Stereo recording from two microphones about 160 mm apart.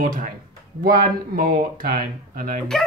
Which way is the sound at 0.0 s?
60° right (ahead or behind).